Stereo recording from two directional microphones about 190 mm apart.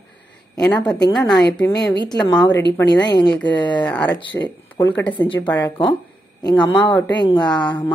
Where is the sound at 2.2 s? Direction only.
20° left (ahead or behind).